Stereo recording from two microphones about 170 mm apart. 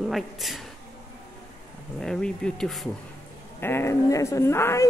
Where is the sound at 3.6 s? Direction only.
15° left (ahead or behind).